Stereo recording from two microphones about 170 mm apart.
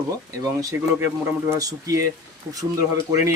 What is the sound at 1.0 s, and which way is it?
Speech, 20° right (ahead or behind).